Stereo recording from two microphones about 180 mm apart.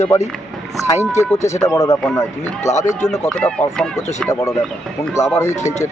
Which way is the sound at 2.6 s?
40° left (ahead or behind).